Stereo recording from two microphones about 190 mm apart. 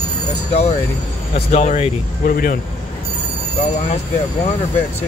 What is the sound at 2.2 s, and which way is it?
Speech, 50° left (ahead or behind).